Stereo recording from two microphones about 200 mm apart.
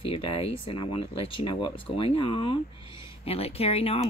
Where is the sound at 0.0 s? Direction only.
30° left (ahead or behind).